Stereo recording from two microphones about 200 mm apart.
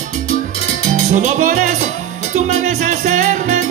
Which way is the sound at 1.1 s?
35° right (ahead or behind).